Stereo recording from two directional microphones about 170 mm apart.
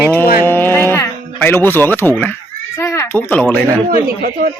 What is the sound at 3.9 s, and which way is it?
Speech, 60° right (ahead or behind).